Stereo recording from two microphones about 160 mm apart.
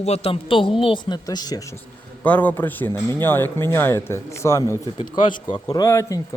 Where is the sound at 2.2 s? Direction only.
10° left (ahead or behind).